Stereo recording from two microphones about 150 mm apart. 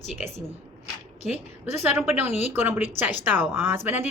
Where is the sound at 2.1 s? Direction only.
15° right (ahead or behind).